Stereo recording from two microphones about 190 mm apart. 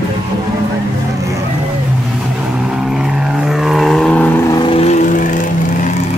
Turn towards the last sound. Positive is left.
turn(degrees=35)  # may be behind; listen again after turning